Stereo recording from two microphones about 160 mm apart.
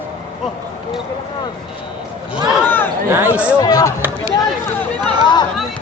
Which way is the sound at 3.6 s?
20° left (ahead or behind).